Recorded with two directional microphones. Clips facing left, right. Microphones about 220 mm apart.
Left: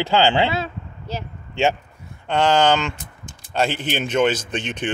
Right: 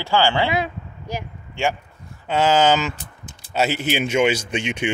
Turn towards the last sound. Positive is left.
turn(degrees=-10)  # may be behind; listen again after turning